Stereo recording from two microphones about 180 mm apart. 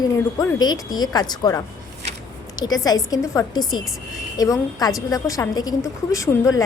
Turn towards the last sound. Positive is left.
turn(degrees=20)  # may be behind; listen again after turning